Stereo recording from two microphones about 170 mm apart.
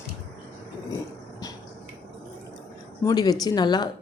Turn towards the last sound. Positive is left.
turn(degrees=25)  # may be behind; listen again after turning